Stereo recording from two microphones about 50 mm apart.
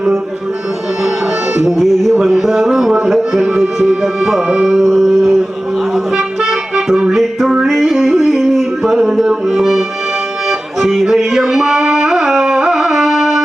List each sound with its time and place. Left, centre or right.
1.5 s music: centre
4.0 s speech: centre
4.6 s music: centre
6.4 s music: centre
7.1 s yodeling: centre
10.8 s music: centre